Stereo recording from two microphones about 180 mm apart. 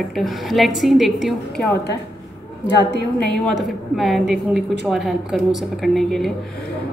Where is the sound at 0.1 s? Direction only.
Centre (ahead or behind).